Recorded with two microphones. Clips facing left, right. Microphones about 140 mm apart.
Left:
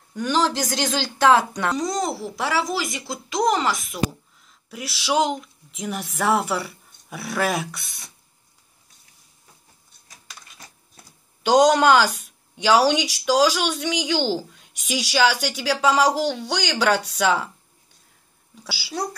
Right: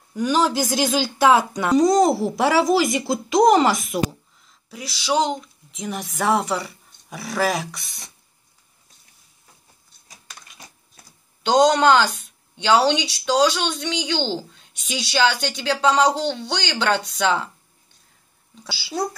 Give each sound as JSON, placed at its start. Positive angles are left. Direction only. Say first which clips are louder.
{"t": 0.1, "sound": "speech", "louder": "right 2 dB", "side_deg": -5}
{"t": 1.8, "sound": "speech", "louder": "right 9 dB", "side_deg": -40}
{"t": 2.7, "sound": "speech", "louder": "right 9 dB", "side_deg": -10}
{"t": 3.3, "sound": "a woman's voice", "louder": "right 6 dB", "side_deg": -45}
{"t": 4.6, "sound": "a woman's voice", "louder": "right 1 dB", "side_deg": 5}
{"t": 11.4, "sound": "a woman's voice", "louder": "even", "side_deg": 10}
{"t": 18.5, "sound": "a woman's voice", "louder": "right 1 dB", "side_deg": 5}